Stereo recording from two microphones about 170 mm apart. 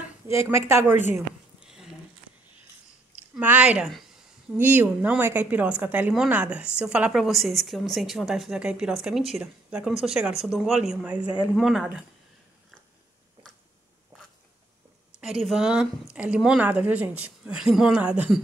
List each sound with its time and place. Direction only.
0.3 s a woman's voice: 15° right (ahead or behind)
1.6 s a sound: 5° right (ahead or behind)
3.3 s a woman's voice: 10° right (ahead or behind)
15.4 s a woman's voice: 5° right (ahead or behind)